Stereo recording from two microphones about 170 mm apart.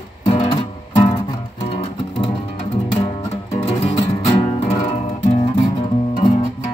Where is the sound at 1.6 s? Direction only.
35° left (ahead or behind).